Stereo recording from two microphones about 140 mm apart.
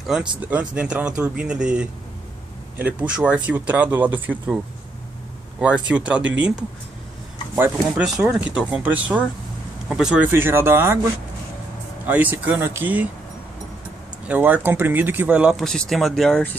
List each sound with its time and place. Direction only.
0.0 s speech: 5° right (ahead or behind)
5.9 s speech: 10° right (ahead or behind)
8.2 s speech: 10° right (ahead or behind)
12.1 s speech: 10° right (ahead or behind)
14.2 s speech: 10° right (ahead or behind); by 16.5 s 5° left (ahead or behind)